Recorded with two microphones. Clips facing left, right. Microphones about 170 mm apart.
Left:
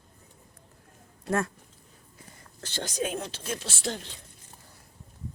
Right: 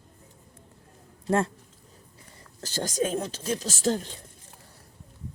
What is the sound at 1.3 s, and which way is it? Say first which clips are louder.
Speech: right 3 dB; 30° right (ahead or behind).